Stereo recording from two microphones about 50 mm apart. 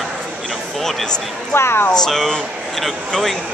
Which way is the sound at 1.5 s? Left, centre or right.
Left.